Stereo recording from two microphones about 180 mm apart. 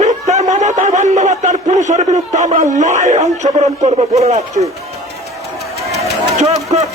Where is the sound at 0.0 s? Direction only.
40° right (ahead or behind).